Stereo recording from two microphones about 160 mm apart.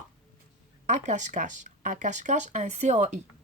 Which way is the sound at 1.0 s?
50° right (ahead or behind).